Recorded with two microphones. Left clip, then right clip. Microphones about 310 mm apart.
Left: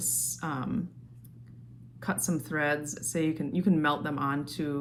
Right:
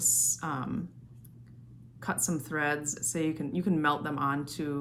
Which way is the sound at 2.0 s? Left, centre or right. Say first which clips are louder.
Even; centre.